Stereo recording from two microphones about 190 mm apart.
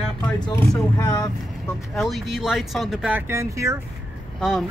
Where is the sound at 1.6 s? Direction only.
Centre (ahead or behind); by 3.8 s 15° right (ahead or behind).